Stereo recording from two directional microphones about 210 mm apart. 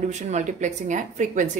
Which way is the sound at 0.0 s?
35° right (ahead or behind).